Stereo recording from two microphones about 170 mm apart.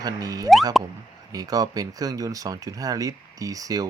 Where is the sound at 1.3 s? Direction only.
20° right (ahead or behind).